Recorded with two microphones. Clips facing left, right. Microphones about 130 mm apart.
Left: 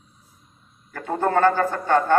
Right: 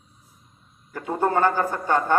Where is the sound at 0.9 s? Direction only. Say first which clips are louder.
Left 1 dB; 15° right (ahead or behind).